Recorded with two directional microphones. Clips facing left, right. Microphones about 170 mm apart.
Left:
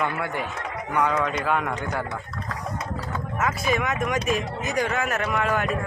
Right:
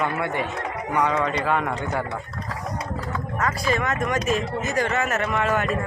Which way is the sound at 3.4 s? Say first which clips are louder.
Even; 5° left (ahead or behind).